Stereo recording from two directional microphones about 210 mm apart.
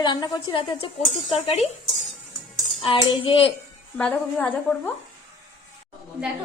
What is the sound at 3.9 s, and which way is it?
Speech, 5° left (ahead or behind).